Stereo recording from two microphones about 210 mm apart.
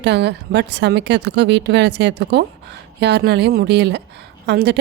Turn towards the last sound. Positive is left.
turn(degrees=-55)  # may be behind; listen again after turning